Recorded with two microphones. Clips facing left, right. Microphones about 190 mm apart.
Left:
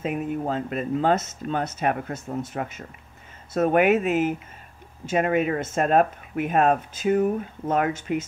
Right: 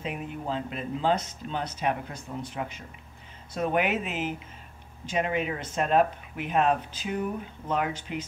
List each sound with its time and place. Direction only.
0.0 s speech: 45° left (ahead or behind)